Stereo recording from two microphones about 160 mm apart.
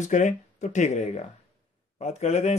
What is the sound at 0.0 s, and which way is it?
Speech, 45° left (ahead or behind).